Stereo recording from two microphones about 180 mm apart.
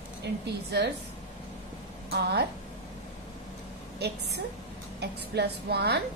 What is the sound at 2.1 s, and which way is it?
Speech, 65° right (ahead or behind).